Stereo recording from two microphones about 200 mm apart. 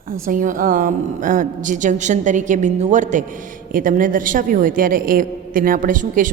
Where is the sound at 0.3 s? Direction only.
40° right (ahead or behind).